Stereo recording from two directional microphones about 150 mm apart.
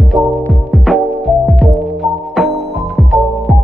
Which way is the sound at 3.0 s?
Centre (ahead or behind).